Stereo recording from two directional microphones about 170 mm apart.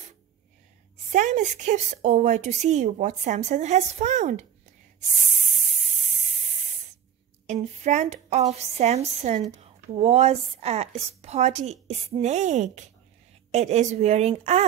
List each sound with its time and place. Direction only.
1.1 s a woman's voice: 45° right (ahead or behind)
7.4 s a woman's voice: 45° right (ahead or behind)